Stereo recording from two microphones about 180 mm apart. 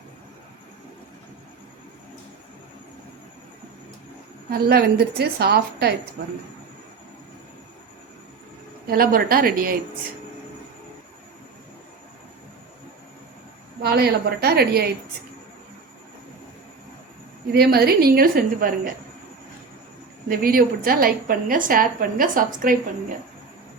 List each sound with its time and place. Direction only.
4.7 s a woman's voice: 60° right (ahead or behind)
8.9 s a woman's voice: 55° right (ahead or behind)
13.8 s a woman's voice: 60° right (ahead or behind)
17.5 s a woman's voice: 60° right (ahead or behind)
20.2 s a woman's voice: 55° right (ahead or behind)